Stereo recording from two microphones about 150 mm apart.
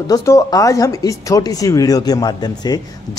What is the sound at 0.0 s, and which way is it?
A woman's voice, 20° left (ahead or behind).